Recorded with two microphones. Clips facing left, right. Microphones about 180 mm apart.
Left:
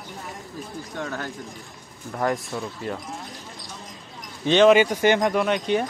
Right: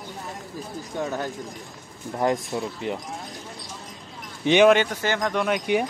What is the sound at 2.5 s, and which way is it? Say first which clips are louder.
Speech: right 2 dB; 20° right (ahead or behind).